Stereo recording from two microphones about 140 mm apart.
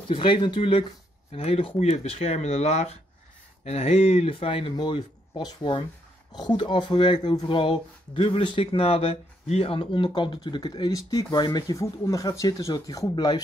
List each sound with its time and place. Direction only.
0.1 s speech: 35° left (ahead or behind)